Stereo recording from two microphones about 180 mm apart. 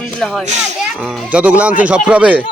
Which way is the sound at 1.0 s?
5° right (ahead or behind).